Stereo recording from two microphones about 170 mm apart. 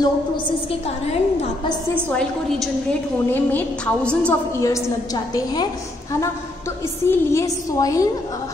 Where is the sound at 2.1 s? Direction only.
5° left (ahead or behind).